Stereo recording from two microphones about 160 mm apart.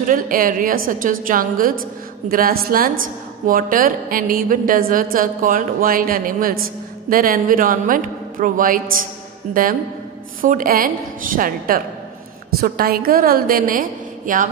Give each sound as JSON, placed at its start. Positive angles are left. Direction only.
{"t": 0.0, "sound": "a woman's voice", "side_deg": -60}